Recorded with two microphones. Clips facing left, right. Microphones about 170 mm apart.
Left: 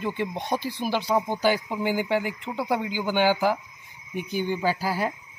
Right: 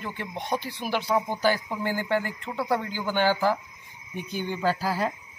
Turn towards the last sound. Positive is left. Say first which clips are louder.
# even
turn(degrees=5)  # may be behind; listen again after turning